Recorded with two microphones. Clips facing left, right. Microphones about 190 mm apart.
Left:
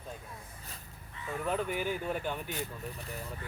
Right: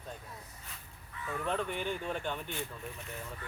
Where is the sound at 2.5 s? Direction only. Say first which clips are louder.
Left 2 dB; 40° left (ahead or behind).